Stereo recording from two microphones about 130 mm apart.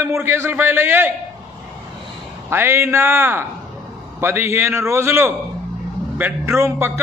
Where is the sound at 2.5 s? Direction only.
20° right (ahead or behind).